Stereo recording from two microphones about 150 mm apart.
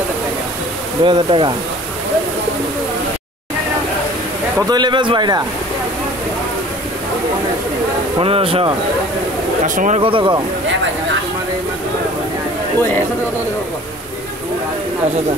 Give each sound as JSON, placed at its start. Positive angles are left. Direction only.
{"t": 1.0, "sound": "speech", "side_deg": -35}
{"t": 4.6, "sound": "a man's voice", "side_deg": -30}
{"t": 8.2, "sound": "speech", "side_deg": -40}
{"t": 9.8, "sound": "speech", "side_deg": -55}
{"t": 10.0, "sound": "speech", "side_deg": -35}